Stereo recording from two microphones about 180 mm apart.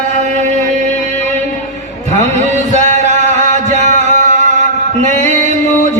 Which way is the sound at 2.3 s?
40° right (ahead or behind).